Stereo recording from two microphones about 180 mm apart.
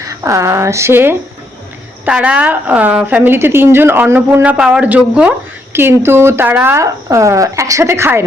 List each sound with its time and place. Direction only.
0.0 s a woman's voice: 15° right (ahead or behind)